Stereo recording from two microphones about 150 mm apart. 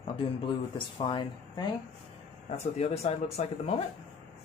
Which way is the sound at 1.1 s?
30° left (ahead or behind).